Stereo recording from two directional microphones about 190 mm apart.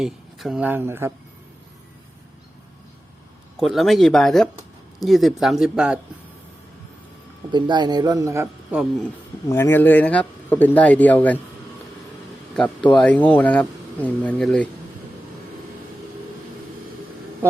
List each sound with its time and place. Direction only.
0.0 s speech: centre (ahead or behind)
3.6 s speech: centre (ahead or behind)
7.5 s speech: 25° right (ahead or behind)
9.5 s a man's voice: 15° left (ahead or behind)
12.9 s a man's voice: 5° left (ahead or behind)